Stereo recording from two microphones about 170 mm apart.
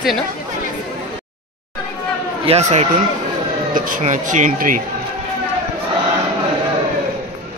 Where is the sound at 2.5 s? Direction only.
40° right (ahead or behind).